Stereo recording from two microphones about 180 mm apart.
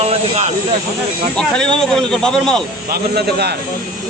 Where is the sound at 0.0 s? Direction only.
35° right (ahead or behind).